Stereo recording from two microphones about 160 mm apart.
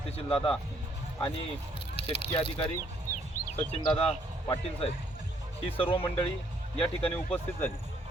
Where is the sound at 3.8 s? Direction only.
25° left (ahead or behind).